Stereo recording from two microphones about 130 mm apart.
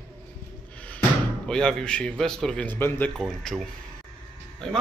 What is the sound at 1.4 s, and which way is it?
A man's voice, 5° left (ahead or behind).